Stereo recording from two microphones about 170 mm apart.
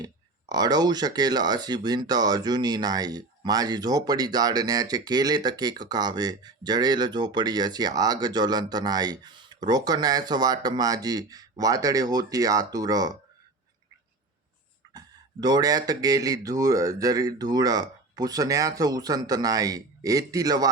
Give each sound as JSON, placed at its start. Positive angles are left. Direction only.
{"t": 0.0, "sound": "speech", "side_deg": -25}
{"t": 14.9, "sound": "speech", "side_deg": -20}